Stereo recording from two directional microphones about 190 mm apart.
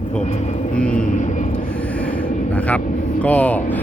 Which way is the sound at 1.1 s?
40° left (ahead or behind).